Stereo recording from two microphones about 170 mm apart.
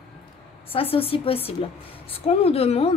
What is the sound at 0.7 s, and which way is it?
A woman's voice, 35° left (ahead or behind).